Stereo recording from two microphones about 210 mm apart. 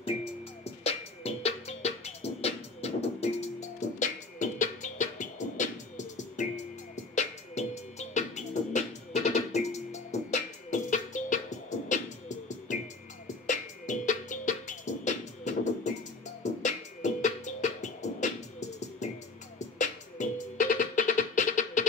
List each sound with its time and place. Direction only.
0.8 s music: 30° left (ahead or behind)